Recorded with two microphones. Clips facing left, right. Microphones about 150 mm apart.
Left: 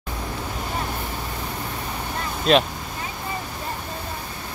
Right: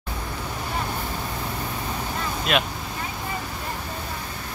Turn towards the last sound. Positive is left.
turn(degrees=35)  # may be behind; listen again after turning